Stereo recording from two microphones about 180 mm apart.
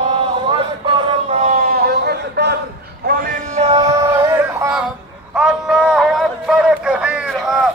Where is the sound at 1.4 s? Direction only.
50° right (ahead or behind); by 2.6 s 65° right (ahead or behind).